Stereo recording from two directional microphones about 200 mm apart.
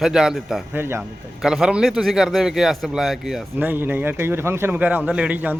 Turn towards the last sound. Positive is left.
turn(degrees=-10)  # may be behind; listen again after turning